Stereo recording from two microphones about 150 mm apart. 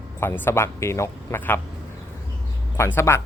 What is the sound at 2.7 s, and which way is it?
Speech, 15° left (ahead or behind).